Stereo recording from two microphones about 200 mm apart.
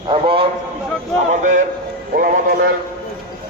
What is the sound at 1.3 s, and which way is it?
Speech, 40° right (ahead or behind).